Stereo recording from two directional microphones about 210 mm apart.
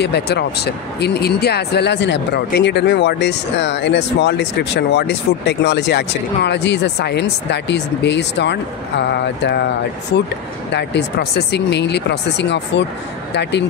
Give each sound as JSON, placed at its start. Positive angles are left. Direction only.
{"t": 0.0, "sound": "speech", "side_deg": 55}